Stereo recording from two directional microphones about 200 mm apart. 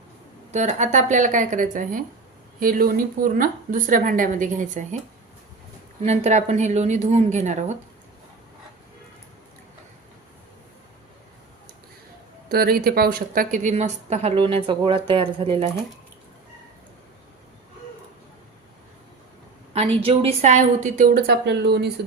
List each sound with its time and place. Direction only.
0.5 s a woman's voice: 35° right (ahead or behind)
6.0 s a woman's voice: 35° right (ahead or behind)
12.5 s a woman's voice: 50° right (ahead or behind); by 15.7 s 25° right (ahead or behind)
19.7 s a woman's voice: 30° right (ahead or behind); by 21.9 s 55° right (ahead or behind)